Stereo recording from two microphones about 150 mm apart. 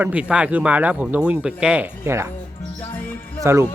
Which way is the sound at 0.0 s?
10° right (ahead or behind).